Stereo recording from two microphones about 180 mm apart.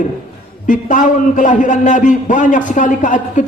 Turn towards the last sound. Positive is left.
turn(degrees=45)  # may be behind; listen again after turning